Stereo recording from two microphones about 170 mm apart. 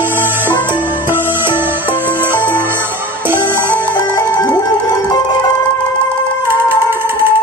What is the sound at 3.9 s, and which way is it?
Music, 20° left (ahead or behind).